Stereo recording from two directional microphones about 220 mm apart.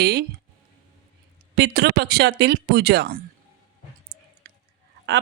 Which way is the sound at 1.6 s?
45° right (ahead or behind).